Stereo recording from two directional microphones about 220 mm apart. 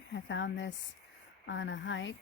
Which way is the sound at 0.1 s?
55° left (ahead or behind).